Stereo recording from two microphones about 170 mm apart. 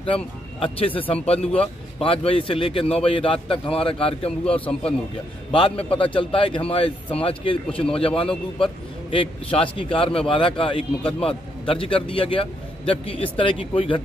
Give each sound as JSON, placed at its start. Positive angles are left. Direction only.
{"t": 0.0, "sound": "a man's voice", "side_deg": 30}